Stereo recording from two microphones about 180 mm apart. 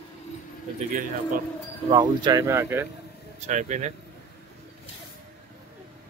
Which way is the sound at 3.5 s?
40° right (ahead or behind).